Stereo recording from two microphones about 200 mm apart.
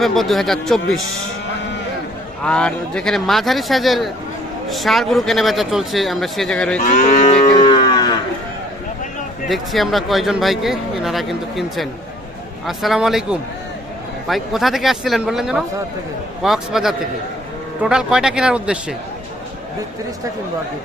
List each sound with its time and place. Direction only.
0.0 s speech: centre (ahead or behind)
2.4 s speech: 5° left (ahead or behind)
6.8 s moo: 40° left (ahead or behind)
7.5 s music: 20° left (ahead or behind)
9.5 s speech: centre (ahead or behind)